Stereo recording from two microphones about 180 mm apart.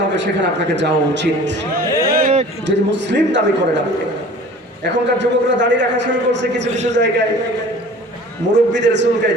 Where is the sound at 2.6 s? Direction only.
80° right.